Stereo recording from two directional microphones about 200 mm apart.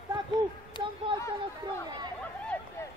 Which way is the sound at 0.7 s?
25° left (ahead or behind).